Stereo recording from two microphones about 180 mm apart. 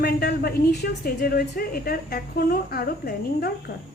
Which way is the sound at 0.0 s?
60° left (ahead or behind).